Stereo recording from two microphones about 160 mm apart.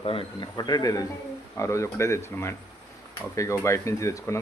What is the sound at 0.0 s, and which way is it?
A man's voice, 35° left (ahead or behind).